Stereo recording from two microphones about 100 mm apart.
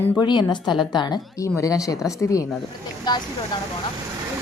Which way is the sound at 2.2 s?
35° left (ahead or behind).